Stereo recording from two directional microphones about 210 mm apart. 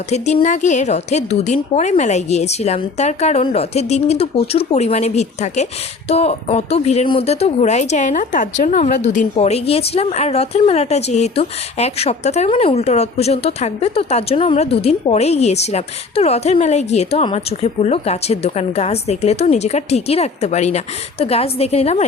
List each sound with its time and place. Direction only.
0.1 s speech: 30° left (ahead or behind)